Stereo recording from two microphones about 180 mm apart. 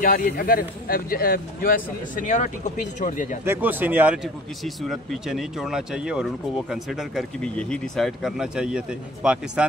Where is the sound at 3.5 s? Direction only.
10° right (ahead or behind).